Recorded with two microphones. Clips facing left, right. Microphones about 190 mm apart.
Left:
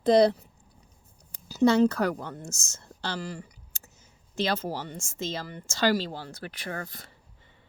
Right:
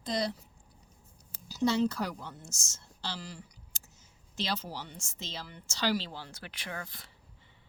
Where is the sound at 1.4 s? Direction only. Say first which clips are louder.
Left 7 dB; 60° left (ahead or behind).